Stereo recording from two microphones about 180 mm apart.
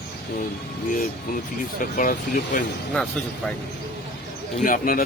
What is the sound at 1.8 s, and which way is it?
Speech, 50° left (ahead or behind).